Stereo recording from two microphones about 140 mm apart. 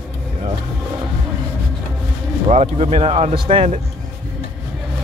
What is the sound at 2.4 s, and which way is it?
Speech, 50° right (ahead or behind).